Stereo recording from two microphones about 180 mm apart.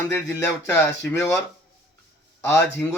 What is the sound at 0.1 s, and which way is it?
Speech, 20° left (ahead or behind).